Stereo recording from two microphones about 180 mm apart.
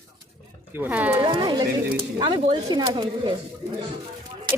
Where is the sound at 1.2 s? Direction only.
25° right (ahead or behind).